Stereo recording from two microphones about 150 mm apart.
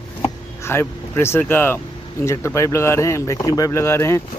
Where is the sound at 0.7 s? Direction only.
15° left (ahead or behind).